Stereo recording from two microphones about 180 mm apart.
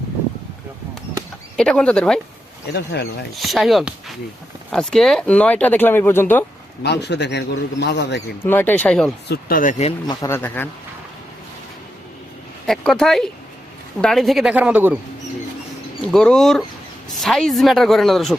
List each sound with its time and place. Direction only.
1.5 s speech: 5° left (ahead or behind)
2.7 s a man's voice: 65° left (ahead or behind)
3.3 s speech: centre (ahead or behind)
6.8 s a man's voice: 70° left (ahead or behind)
8.4 s speech: 10° left (ahead or behind)
9.3 s speech: 50° left (ahead or behind)
10.1 s speech: 15° left (ahead or behind)
12.6 s speech: centre (ahead or behind)
16.1 s speech: 5° left (ahead or behind)